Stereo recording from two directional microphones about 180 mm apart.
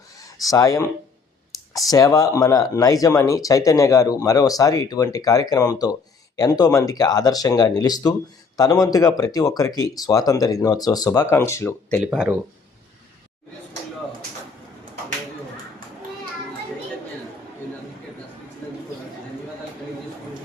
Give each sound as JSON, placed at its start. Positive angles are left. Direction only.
{"t": 0.2, "sound": "speech", "side_deg": 20}
{"t": 12.1, "sound": "speech", "side_deg": -5}